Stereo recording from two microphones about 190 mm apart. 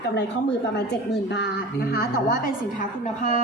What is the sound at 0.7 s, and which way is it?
Speech, 65° left (ahead or behind).